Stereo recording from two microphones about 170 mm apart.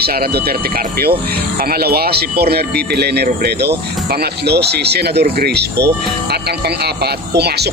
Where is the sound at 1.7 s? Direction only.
65° right (ahead or behind).